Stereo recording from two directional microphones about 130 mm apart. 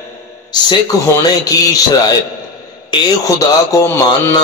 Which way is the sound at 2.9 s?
25° left (ahead or behind).